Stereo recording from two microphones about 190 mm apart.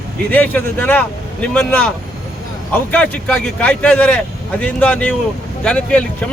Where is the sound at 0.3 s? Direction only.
10° left (ahead or behind).